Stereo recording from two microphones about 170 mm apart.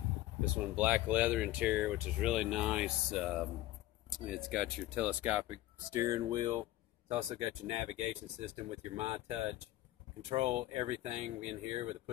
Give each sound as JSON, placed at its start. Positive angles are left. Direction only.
{"t": 0.4, "sound": "speech", "side_deg": -10}
{"t": 5.9, "sound": "speech", "side_deg": -20}
{"t": 7.1, "sound": "speech", "side_deg": -35}
{"t": 10.3, "sound": "speech", "side_deg": -40}